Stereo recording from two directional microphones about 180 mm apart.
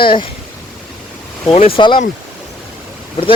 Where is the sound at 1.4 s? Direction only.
30° left (ahead or behind).